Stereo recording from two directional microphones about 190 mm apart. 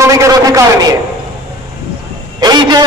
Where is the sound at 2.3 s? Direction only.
20° right (ahead or behind).